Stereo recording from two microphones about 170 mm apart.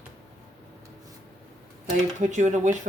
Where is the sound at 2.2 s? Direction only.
45° right (ahead or behind).